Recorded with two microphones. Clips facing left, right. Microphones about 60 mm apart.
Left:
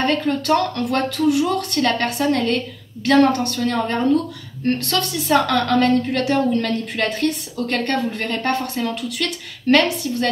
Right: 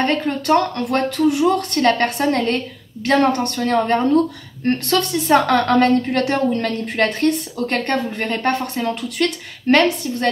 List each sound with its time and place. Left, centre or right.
0.0 s a woman's voice: right
4.6 s a woman's voice: right